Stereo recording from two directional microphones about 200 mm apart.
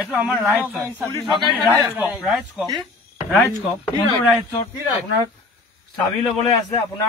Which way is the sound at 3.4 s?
10° left (ahead or behind).